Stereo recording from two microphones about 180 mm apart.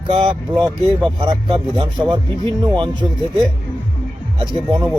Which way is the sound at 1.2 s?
30° right (ahead or behind).